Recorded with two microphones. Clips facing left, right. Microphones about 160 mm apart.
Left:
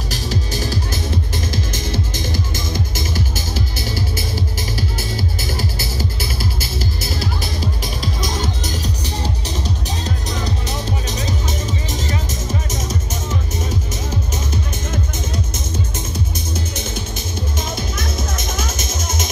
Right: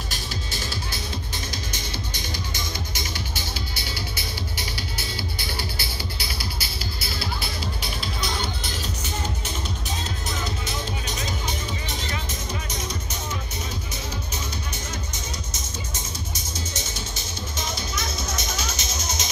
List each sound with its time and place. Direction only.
0.1 s music: 40° left (ahead or behind)
1.5 s music: 90° left
2.9 s music: 45° left (ahead or behind)
16.3 s music: 55° left (ahead or behind)